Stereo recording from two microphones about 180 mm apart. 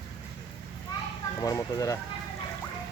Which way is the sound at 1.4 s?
20° left (ahead or behind).